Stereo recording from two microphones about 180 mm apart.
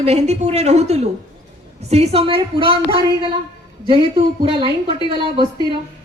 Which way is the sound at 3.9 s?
30° right (ahead or behind).